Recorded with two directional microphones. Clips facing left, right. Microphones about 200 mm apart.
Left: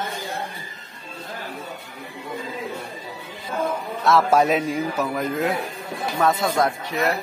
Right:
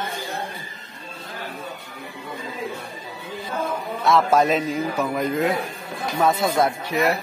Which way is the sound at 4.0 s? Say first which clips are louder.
Even; 5° left (ahead or behind).